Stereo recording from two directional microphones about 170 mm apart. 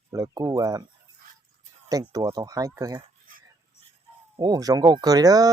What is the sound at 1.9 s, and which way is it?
Speech, 20° right (ahead or behind).